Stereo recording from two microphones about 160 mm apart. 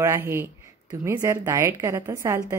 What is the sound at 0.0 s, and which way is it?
A woman's voice, 15° right (ahead or behind).